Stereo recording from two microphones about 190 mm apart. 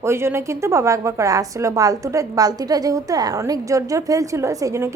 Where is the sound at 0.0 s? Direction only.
15° right (ahead or behind).